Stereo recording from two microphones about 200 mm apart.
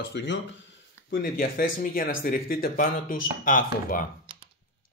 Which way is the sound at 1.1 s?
50° left (ahead or behind).